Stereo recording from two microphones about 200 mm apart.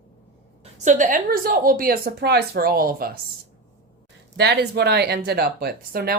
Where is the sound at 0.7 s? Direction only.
40° right (ahead or behind).